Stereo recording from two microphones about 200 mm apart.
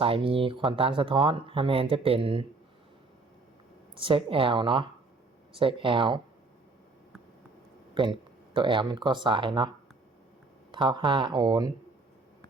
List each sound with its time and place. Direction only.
0.0 s speech: 25° right (ahead or behind)
3.9 s speech: 25° right (ahead or behind)
8.0 s speech: 25° right (ahead or behind)